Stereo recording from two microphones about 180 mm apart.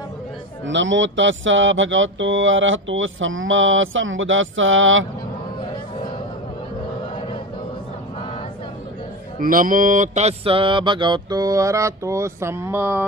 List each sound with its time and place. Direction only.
0.7 s speech: 90° right
9.4 s mantra: 50° right (ahead or behind); by 13.0 s 10° right (ahead or behind)